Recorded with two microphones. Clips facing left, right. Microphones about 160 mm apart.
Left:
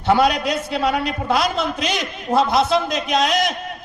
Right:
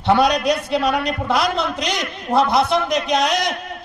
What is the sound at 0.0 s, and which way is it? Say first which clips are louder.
A man's voice: right 1 dB; 20° right (ahead or behind).